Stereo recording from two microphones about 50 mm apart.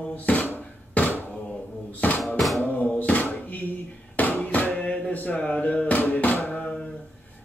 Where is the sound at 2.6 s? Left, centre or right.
Left.